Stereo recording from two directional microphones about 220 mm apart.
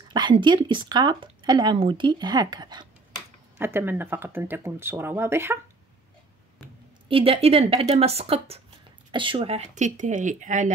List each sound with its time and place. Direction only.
0.1 s speech: 20° right (ahead or behind)
7.1 s speech: 25° right (ahead or behind)